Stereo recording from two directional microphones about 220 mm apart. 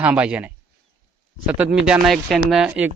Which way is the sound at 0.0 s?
5° right (ahead or behind).